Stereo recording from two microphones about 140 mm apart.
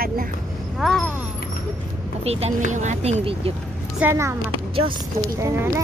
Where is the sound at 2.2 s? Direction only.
50° right (ahead or behind).